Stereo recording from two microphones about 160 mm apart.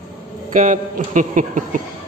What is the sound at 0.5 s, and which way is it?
Speech, 50° right (ahead or behind).